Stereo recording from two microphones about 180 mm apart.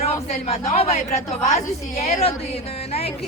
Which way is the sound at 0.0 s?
35° left (ahead or behind).